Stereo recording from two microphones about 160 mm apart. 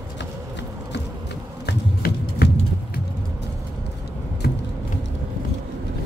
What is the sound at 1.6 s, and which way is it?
Music, 80° left.